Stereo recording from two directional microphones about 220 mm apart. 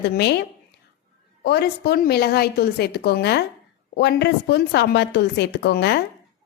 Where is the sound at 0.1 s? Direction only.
50° left (ahead or behind).